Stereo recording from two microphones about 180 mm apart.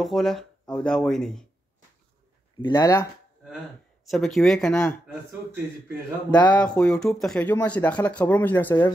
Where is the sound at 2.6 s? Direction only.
25° left (ahead or behind).